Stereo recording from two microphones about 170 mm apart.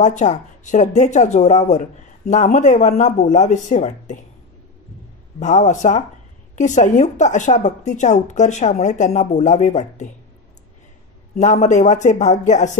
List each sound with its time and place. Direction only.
0.0 s speech: 45° left (ahead or behind)
5.4 s speech: 45° left (ahead or behind)
11.3 s speech: 45° left (ahead or behind)